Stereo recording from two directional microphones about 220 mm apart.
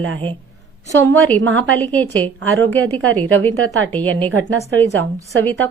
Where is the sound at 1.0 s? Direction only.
10° left (ahead or behind).